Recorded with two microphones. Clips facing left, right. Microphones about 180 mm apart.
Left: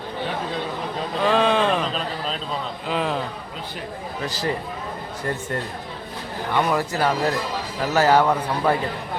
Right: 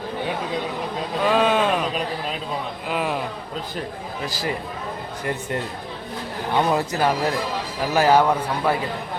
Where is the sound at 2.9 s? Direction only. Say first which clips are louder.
Left 1 dB; 10° right (ahead or behind).